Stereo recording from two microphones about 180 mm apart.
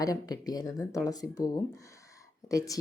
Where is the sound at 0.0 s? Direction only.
20° left (ahead or behind).